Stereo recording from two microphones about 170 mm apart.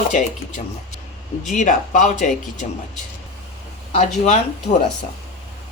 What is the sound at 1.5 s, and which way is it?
Speech, 45° left (ahead or behind).